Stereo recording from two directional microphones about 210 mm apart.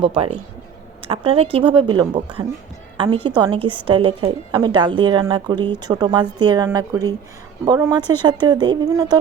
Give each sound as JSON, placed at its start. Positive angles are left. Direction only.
{"t": 0.0, "sound": "speech", "side_deg": -25}